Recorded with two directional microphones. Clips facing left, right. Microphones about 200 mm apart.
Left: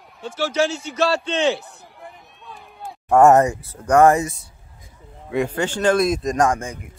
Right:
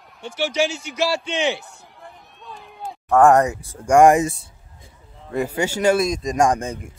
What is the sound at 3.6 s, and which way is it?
Speech, 10° right (ahead or behind).